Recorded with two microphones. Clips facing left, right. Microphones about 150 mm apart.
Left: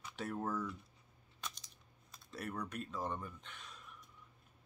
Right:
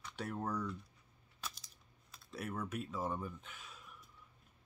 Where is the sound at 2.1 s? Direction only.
Centre (ahead or behind).